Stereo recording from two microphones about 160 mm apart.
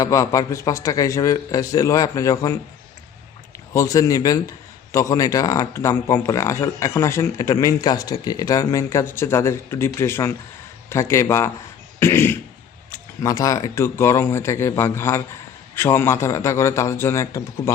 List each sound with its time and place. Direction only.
0.0 s a man's voice: 20° left (ahead or behind)
3.8 s a man's voice: 20° left (ahead or behind)
11.9 s a sound: 15° left (ahead or behind)
12.9 s speech: 20° left (ahead or behind)